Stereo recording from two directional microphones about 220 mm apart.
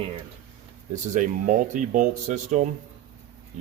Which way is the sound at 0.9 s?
35° right (ahead or behind).